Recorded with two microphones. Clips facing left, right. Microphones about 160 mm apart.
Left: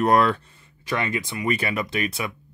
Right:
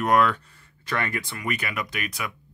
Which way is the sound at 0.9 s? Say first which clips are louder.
Left 3 dB; 20° left (ahead or behind).